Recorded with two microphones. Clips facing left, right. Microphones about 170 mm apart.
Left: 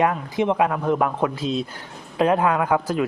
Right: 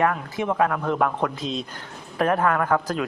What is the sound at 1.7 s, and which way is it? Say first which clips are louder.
A man's voice: left 3 dB; 15° left (ahead or behind).